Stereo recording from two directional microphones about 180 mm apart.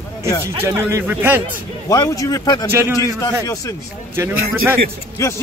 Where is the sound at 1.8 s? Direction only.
20° left (ahead or behind).